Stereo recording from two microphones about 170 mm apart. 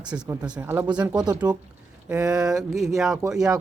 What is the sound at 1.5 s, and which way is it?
Speech, 25° right (ahead or behind).